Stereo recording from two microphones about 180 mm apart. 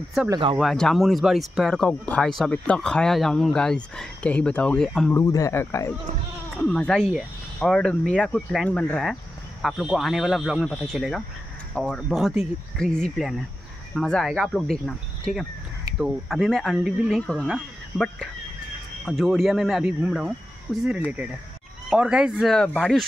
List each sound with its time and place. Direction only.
0.3 s speech: 30° right (ahead or behind)
0.6 s speech: centre (ahead or behind)
5.1 s speech: 20° left (ahead or behind); by 23.0 s 5° left (ahead or behind)